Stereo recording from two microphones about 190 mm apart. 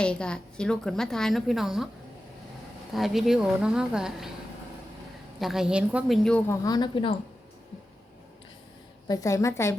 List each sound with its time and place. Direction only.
0.0 s a woman's voice: 5° left (ahead or behind)
2.9 s a woman's voice: centre (ahead or behind)
5.4 s a woman's voice: centre (ahead or behind)
6.5 s speech: 20° left (ahead or behind)
9.0 s a woman's voice: 15° left (ahead or behind)